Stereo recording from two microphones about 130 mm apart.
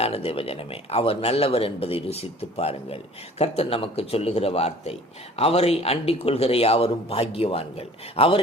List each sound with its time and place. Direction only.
0.0 s speech: 50° left (ahead or behind)